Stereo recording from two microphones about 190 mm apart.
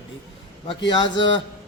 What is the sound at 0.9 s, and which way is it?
Speech, 25° left (ahead or behind).